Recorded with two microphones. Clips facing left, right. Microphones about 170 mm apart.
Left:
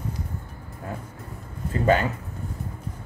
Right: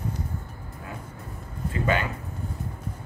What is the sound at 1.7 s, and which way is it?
Speech, 40° left (ahead or behind).